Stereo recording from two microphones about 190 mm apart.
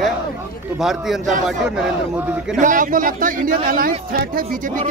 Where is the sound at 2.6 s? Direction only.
45° right (ahead or behind).